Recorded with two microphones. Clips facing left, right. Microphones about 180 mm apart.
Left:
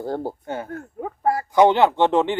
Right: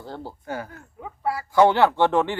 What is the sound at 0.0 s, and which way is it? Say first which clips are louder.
Speech: left 9 dB; 50° left (ahead or behind).